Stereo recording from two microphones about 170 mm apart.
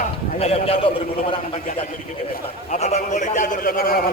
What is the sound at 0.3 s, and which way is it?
Speech, 35° left (ahead or behind).